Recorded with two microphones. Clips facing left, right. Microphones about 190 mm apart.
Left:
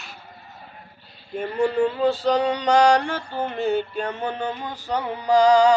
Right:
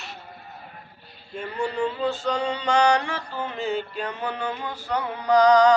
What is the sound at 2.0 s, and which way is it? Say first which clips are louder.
Male singing: left 5 dB; 40° left (ahead or behind).